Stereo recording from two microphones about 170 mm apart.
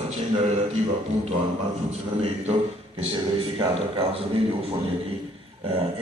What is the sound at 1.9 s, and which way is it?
A man's voice, 40° right (ahead or behind).